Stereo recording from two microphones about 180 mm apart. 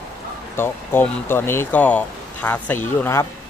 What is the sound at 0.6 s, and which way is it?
Speech, 10° left (ahead or behind).